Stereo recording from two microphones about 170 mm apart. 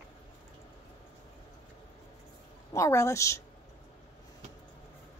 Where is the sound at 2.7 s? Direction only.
15° left (ahead or behind).